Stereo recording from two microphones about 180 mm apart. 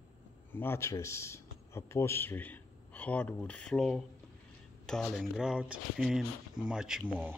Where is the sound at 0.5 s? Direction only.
10° left (ahead or behind).